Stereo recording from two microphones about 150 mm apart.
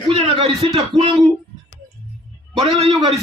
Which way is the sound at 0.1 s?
35° right (ahead or behind).